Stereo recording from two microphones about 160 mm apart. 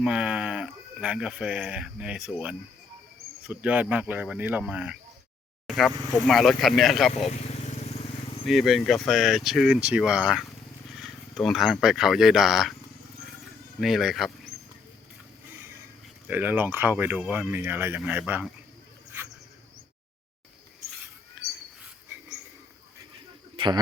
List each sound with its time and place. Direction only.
0.0 s speech: 5° right (ahead or behind)
7.3 s vehicle: 40° left (ahead or behind)
8.4 s speech: centre (ahead or behind)
13.8 s speech: centre (ahead or behind)
15.5 s vehicle: 15° right (ahead or behind)
16.2 s speech: 10° right (ahead or behind)
21.4 s a sound: 5° right (ahead or behind)
23.6 s speech: 25° right (ahead or behind)